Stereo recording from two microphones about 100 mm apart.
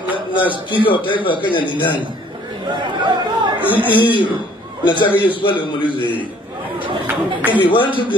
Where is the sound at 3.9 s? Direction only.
55° left (ahead or behind).